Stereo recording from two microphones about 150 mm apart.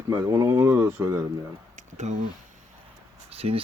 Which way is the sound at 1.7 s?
50° right (ahead or behind).